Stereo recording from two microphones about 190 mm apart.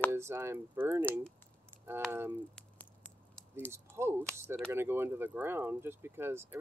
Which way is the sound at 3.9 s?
15° right (ahead or behind).